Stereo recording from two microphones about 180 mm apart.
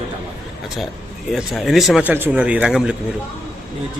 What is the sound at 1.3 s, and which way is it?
Speech, centre (ahead or behind).